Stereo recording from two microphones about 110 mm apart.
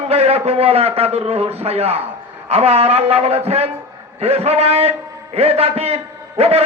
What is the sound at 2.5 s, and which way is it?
A man's voice, 70° right (ahead or behind).